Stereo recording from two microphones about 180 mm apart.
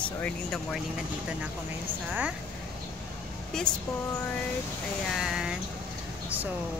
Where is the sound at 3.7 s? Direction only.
5° left (ahead or behind).